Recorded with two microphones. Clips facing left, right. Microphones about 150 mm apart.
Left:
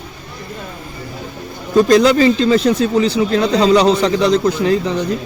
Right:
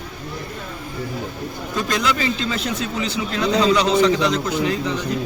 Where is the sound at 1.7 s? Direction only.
35° left (ahead or behind).